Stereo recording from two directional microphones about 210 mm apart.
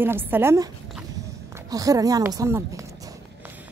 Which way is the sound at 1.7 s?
15° right (ahead or behind).